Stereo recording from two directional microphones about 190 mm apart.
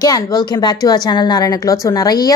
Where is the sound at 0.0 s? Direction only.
20° left (ahead or behind).